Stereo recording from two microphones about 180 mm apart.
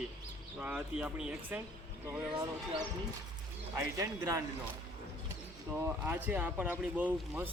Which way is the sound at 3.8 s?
20° right (ahead or behind).